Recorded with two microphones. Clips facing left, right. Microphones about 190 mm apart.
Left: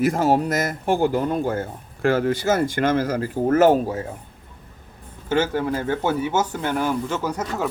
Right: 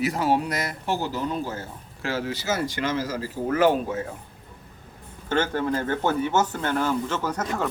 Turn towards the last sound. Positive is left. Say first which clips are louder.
# left 2 dB
turn(degrees=10)  # may be behind; listen again after turning